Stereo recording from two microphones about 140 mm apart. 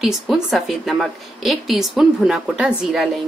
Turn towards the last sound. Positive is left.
turn(degrees=-5)  # may be behind; listen again after turning